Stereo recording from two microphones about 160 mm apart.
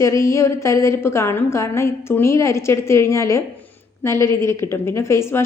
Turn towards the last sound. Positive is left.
turn(degrees=15)  # may be behind; listen again after turning